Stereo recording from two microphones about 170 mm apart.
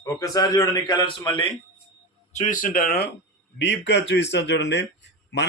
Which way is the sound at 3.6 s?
90° left.